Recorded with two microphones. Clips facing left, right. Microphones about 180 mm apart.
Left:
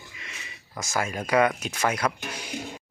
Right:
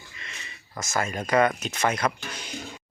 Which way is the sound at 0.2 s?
10° left (ahead or behind).